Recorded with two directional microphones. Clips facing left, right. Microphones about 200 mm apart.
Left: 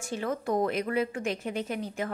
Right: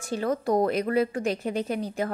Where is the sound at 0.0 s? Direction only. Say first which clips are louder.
Right 4 dB; 40° right (ahead or behind).